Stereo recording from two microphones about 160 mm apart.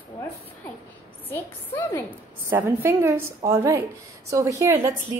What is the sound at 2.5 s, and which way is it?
A woman's voice, 15° right (ahead or behind).